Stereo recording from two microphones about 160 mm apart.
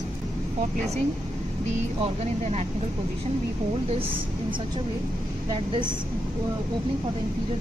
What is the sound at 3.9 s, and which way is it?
Speech, 35° right (ahead or behind).